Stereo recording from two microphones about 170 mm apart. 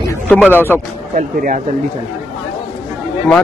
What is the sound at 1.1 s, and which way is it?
Speech, 50° right (ahead or behind).